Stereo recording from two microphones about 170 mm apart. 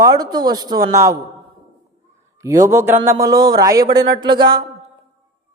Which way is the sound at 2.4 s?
20° right (ahead or behind).